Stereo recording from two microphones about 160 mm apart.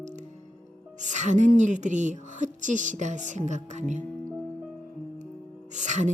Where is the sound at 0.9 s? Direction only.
50° right (ahead or behind).